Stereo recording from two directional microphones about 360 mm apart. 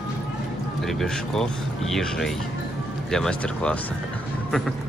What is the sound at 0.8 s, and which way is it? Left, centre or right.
Speech, centre.